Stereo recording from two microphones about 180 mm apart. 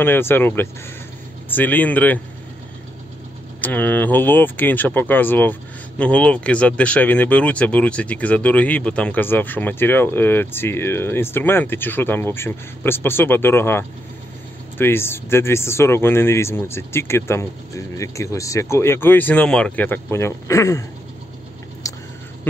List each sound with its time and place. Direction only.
0.0 s speech: 10° left (ahead or behind)
3.6 s speech: 10° left (ahead or behind)
21.8 s a sound: 20° left (ahead or behind)